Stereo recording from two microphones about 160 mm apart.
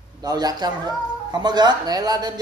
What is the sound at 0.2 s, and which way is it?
Speech, 25° right (ahead or behind).